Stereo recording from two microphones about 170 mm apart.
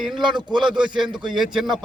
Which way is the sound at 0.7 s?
5° right (ahead or behind).